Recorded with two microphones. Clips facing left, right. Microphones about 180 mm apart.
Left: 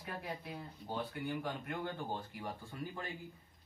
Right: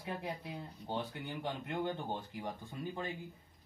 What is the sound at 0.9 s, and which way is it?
Speech, 25° right (ahead or behind).